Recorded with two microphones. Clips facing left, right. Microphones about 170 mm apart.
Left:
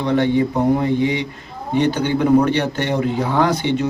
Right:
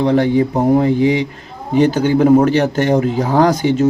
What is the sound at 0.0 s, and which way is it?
Speech, 40° right (ahead or behind).